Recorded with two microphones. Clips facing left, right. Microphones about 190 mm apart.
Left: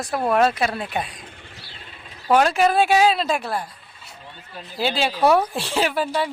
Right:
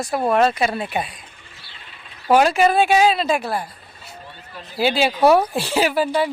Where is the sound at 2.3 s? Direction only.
5° right (ahead or behind).